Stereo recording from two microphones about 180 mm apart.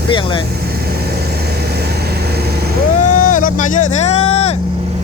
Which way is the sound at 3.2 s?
45° left (ahead or behind).